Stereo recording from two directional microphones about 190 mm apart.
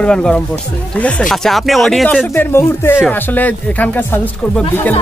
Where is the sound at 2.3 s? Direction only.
15° left (ahead or behind).